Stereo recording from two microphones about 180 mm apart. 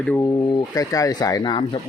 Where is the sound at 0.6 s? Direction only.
20° left (ahead or behind).